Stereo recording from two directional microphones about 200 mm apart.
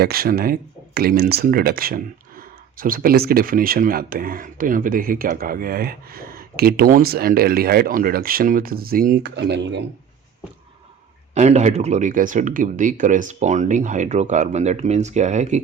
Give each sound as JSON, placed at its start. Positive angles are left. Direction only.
{"t": 0.0, "sound": "speech", "side_deg": -50}
{"t": 11.3, "sound": "speech", "side_deg": -35}